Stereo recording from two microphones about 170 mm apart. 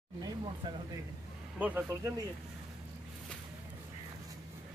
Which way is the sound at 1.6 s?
10° right (ahead or behind).